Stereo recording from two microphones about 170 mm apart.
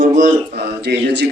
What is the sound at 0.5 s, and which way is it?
Speech, 75° right (ahead or behind).